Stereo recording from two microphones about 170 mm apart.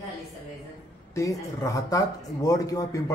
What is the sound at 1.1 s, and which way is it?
A man's voice, 20° left (ahead or behind).